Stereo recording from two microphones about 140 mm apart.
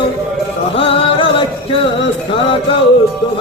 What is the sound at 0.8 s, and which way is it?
Music, 40° left (ahead or behind).